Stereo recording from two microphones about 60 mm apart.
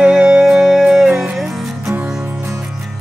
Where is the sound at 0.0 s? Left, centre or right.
Centre.